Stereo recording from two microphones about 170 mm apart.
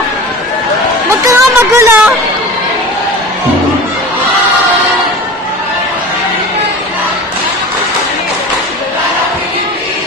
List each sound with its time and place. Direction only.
1.2 s music: 20° right (ahead or behind)